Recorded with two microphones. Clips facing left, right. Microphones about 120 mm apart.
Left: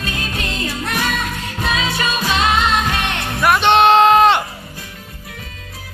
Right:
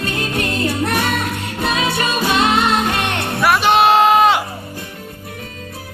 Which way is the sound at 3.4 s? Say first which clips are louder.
Left 1 dB; 5° right (ahead or behind).